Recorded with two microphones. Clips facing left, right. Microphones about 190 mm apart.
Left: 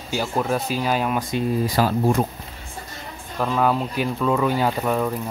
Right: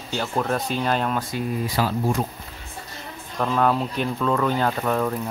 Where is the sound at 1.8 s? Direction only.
50° left (ahead or behind).